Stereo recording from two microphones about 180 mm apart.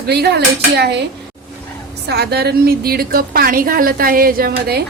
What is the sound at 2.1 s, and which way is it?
A woman's voice, 65° right (ahead or behind).